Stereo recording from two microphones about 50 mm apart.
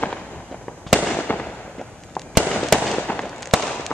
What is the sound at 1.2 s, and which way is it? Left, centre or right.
Fireworks, left.